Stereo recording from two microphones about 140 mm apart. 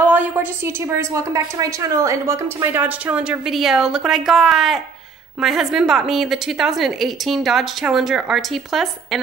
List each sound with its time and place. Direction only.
0.0 s a woman's voice: 10° right (ahead or behind)